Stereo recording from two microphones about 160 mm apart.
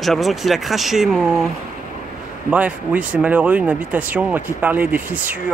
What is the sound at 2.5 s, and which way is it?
Speech, 10° right (ahead or behind).